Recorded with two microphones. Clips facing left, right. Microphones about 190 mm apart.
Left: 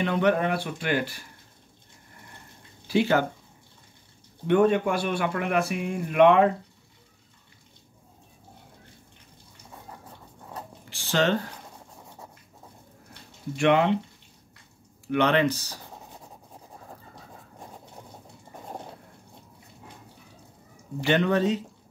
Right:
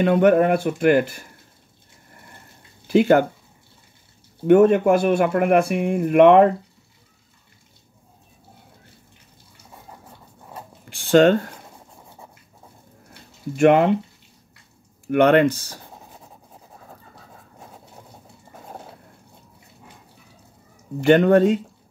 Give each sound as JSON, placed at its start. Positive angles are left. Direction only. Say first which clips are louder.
{"t": 0.0, "sound": "speech", "louder": "right 8 dB", "side_deg": -50}
{"t": 3.0, "sound": "speech", "louder": "right 7 dB", "side_deg": -55}
{"t": 4.5, "sound": "speech", "louder": "right 7 dB", "side_deg": -50}
{"t": 10.9, "sound": "speech", "louder": "right 10 dB", "side_deg": -55}
{"t": 13.6, "sound": "speech", "louder": "right 6 dB", "side_deg": -45}
{"t": 15.0, "sound": "speech", "louder": "right 7 dB", "side_deg": -50}
{"t": 18.6, "sound": "vehicle", "louder": "even", "side_deg": 0}
{"t": 21.0, "sound": "speech", "louder": "right 9 dB", "side_deg": -50}